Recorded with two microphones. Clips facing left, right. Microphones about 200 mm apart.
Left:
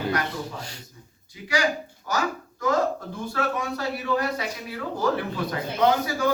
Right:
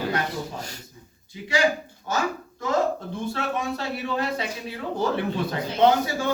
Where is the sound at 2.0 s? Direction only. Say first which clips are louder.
Right 1 dB; 25° right (ahead or behind).